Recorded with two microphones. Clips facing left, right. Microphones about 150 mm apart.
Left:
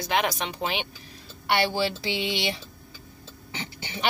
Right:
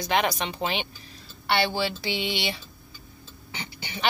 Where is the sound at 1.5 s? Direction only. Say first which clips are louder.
Even; 15° left (ahead or behind).